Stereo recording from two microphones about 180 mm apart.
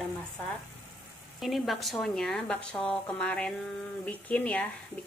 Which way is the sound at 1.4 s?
Centre (ahead or behind).